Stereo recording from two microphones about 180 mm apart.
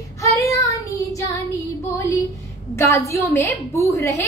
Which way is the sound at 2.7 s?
15° left (ahead or behind).